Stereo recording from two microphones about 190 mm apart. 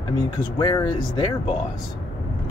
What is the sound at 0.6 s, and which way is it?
Speech, 25° left (ahead or behind).